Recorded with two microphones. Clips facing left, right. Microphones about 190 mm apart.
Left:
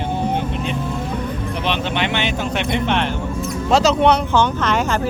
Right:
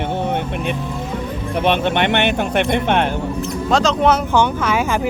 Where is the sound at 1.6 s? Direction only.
55° right (ahead or behind).